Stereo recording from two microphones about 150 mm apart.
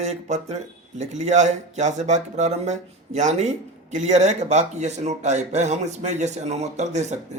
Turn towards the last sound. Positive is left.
turn(degrees=-50)  # may be behind; listen again after turning